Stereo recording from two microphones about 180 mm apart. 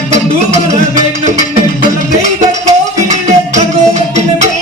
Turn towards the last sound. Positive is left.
turn(degrees=-40)  # may be behind; listen again after turning